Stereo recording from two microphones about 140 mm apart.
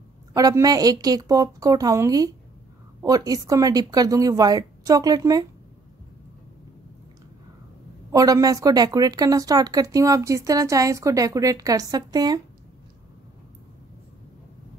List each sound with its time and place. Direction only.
0.3 s speech: 25° right (ahead or behind)
8.1 s speech: 25° right (ahead or behind)